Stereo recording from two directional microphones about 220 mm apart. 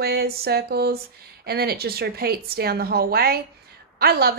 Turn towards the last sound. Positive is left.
turn(degrees=-45)  # may be behind; listen again after turning